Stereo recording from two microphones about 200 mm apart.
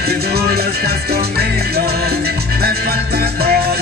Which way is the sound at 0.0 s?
50° right (ahead or behind).